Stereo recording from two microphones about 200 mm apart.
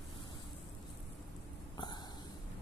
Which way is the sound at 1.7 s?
20° left (ahead or behind).